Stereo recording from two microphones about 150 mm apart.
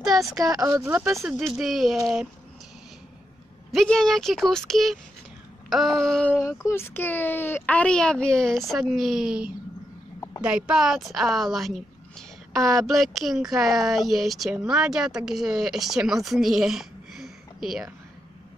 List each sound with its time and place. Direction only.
0.0 s speech: 5° right (ahead or behind)
0.5 s speech: 25° right (ahead or behind)
0.9 s speech: 5° right (ahead or behind)
3.7 s speech: 5° left (ahead or behind)
6.4 s a woman's voice: 20° left (ahead or behind); by 17.9 s 5° right (ahead or behind)